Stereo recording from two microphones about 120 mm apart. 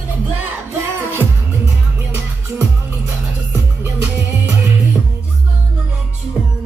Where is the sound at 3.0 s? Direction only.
20° right (ahead or behind).